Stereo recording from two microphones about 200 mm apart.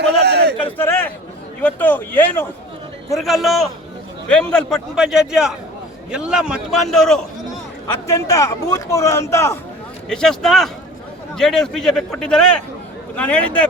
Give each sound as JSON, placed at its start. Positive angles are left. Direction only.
{"t": 0.0, "sound": "a sound", "side_deg": -55}
{"t": 0.8, "sound": "a man's voice", "side_deg": 10}
{"t": 3.2, "sound": "a man's voice", "side_deg": 0}
{"t": 8.0, "sound": "a man's voice", "side_deg": 15}
{"t": 10.1, "sound": "a man's voice", "side_deg": 5}